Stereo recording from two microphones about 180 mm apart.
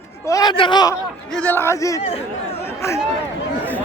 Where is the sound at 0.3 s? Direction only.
20° left (ahead or behind).